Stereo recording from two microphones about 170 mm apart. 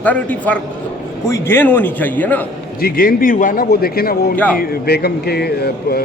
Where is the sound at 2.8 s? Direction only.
55° left (ahead or behind).